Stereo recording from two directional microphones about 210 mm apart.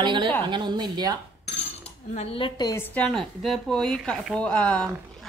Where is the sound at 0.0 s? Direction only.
25° right (ahead or behind).